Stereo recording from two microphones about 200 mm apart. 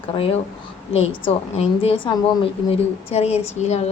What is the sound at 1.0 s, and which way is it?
A woman's voice, 30° left (ahead or behind).